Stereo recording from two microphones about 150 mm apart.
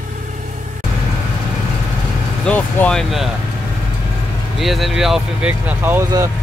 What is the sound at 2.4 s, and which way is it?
Speech, 10° left (ahead or behind).